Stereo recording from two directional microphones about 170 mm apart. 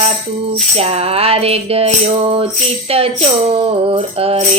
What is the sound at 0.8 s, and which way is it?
Music, 35° right (ahead or behind).